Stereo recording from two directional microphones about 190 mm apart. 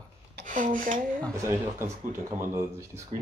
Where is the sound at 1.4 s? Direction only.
15° right (ahead or behind).